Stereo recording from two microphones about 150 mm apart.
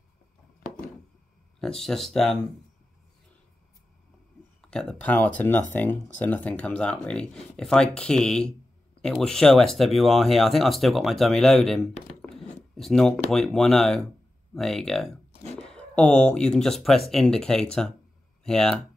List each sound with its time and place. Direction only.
1.6 s speech: 5° left (ahead or behind)
4.6 s speech: 5° left (ahead or behind)